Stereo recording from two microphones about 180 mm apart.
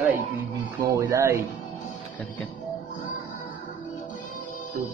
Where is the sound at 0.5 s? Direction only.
20° right (ahead or behind).